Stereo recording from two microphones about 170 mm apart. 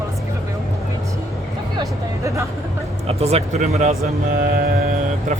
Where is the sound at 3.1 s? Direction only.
35° right (ahead or behind).